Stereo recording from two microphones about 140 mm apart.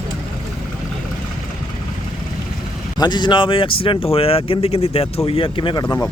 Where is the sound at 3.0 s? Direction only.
30° left (ahead or behind).